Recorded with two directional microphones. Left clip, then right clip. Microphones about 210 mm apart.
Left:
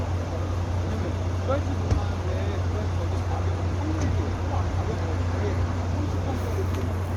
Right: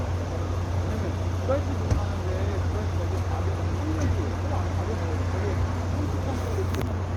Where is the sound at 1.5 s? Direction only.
15° left (ahead or behind).